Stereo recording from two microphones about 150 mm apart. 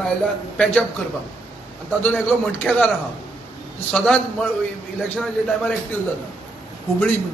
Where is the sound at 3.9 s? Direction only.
10° left (ahead or behind).